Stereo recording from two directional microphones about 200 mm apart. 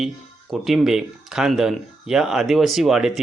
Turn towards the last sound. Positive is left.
turn(degrees=0)  # may be behind; listen again after turning